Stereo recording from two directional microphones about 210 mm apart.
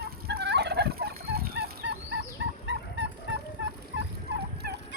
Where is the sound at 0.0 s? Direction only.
50° right (ahead or behind).